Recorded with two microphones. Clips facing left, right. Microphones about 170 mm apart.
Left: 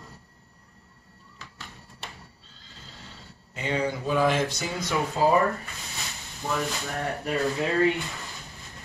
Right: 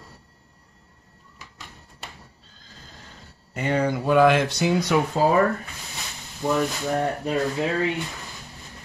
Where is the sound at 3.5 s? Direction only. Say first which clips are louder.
Right 5 dB; 50° right (ahead or behind).